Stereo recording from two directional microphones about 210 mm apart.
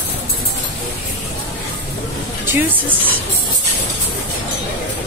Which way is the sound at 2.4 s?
10° right (ahead or behind).